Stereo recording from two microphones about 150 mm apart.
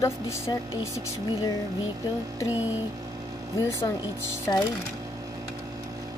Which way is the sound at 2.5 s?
10° right (ahead or behind).